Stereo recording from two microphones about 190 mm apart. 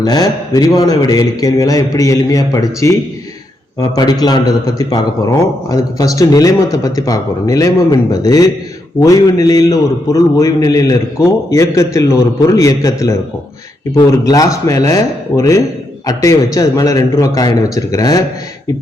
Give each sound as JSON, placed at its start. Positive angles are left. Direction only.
{"t": 0.0, "sound": "a man's voice", "side_deg": 20}